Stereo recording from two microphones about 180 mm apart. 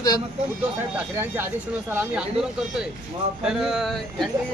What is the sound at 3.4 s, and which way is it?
Speech, 5° right (ahead or behind).